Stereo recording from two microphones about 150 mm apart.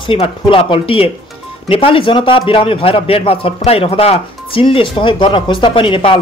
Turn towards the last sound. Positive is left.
turn(degrees=35)  # may be behind; listen again after turning